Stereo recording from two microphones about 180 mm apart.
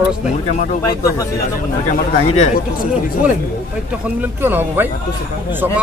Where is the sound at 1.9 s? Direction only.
45° left (ahead or behind).